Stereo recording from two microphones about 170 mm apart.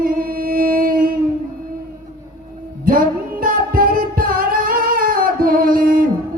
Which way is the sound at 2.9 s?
55° right (ahead or behind).